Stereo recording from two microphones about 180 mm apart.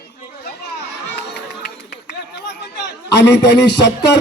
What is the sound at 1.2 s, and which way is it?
Music, 65° left (ahead or behind).